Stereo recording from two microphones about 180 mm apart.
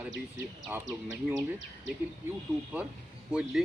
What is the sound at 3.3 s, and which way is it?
Speech, 5° right (ahead or behind).